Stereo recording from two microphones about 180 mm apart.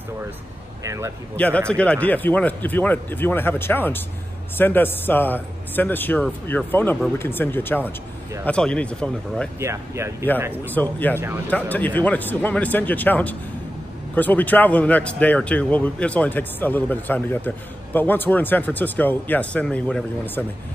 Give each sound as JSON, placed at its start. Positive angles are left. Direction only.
{"t": 0.8, "sound": "speech", "side_deg": -15}
{"t": 1.3, "sound": "speech", "side_deg": 10}
{"t": 9.6, "sound": "speech", "side_deg": -15}
{"t": 10.7, "sound": "speech", "side_deg": 10}